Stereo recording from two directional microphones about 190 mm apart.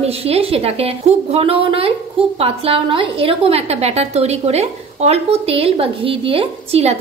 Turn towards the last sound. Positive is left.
turn(degrees=-30)  # may be behind; listen again after turning